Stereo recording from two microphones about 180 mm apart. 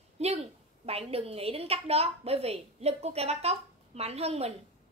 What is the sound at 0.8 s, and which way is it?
A woman's voice, 35° right (ahead or behind).